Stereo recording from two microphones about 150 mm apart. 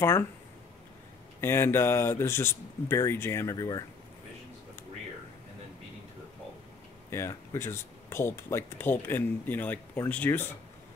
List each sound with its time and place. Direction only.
0.0 s speech: 15° left (ahead or behind)
1.4 s speech: 15° left (ahead or behind)
7.1 s speech: 15° left (ahead or behind)